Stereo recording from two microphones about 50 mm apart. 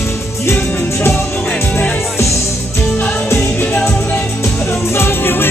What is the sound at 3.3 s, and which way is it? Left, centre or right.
Music, left.